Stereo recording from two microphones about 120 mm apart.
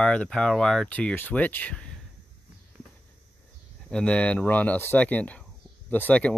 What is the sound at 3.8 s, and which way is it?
Speech, 10° left (ahead or behind).